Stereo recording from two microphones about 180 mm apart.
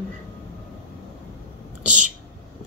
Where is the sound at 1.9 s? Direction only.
45° right (ahead or behind).